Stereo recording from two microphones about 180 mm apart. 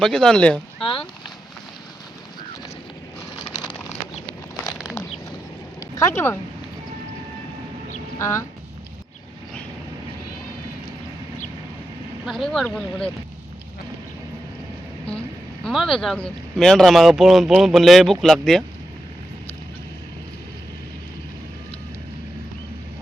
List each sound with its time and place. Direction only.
0.0 s speech: 5° left (ahead or behind)
5.8 s speech: 15° left (ahead or behind)
8.2 s speech: 15° left (ahead or behind)
12.2 s speech: centre (ahead or behind)
15.6 s speech: centre (ahead or behind)